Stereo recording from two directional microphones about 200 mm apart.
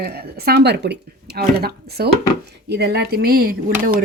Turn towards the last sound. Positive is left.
turn(degrees=-50)  # may be behind; listen again after turning